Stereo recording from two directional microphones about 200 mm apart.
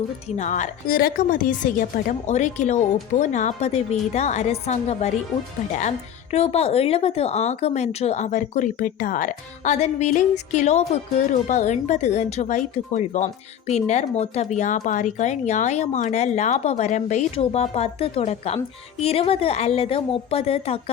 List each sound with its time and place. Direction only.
0.3 s speech: 35° left (ahead or behind)
6.3 s speech: 30° left (ahead or behind)